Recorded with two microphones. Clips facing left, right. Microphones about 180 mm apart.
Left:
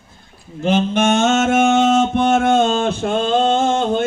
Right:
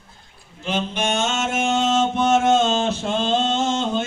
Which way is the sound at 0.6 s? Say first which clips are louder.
Left 8 dB; 50° left (ahead or behind).